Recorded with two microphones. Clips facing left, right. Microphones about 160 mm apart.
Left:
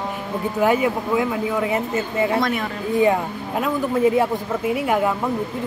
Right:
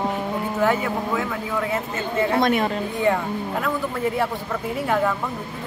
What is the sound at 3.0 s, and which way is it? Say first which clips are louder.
Speech: left 3 dB; 20° left (ahead or behind).